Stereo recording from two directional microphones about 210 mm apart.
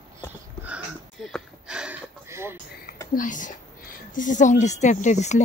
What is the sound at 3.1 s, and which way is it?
Speech, 40° left (ahead or behind).